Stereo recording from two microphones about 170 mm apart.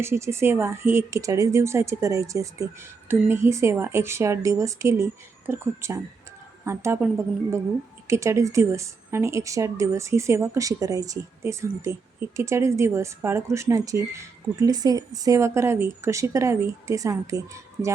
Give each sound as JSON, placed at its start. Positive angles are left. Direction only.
{"t": 0.0, "sound": "speech", "side_deg": -15}